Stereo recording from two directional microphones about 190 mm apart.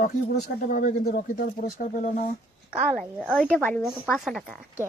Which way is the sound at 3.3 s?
5° left (ahead or behind).